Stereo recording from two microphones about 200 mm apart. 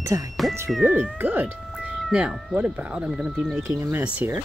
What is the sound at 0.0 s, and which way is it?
Speech, 15° right (ahead or behind).